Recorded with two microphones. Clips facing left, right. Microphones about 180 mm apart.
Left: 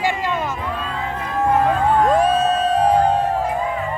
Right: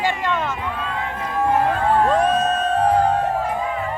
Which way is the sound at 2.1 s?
10° left (ahead or behind).